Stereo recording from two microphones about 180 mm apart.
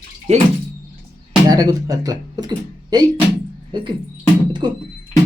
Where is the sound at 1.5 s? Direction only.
20° right (ahead or behind).